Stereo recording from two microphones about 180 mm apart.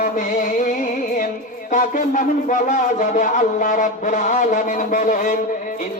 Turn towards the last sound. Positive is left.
turn(degrees=45)  # may be behind; listen again after turning